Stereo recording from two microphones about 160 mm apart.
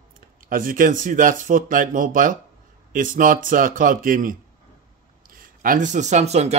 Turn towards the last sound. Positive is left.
turn(degrees=-45)  # may be behind; listen again after turning